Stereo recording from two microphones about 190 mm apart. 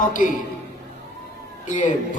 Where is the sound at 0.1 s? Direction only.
45° left (ahead or behind).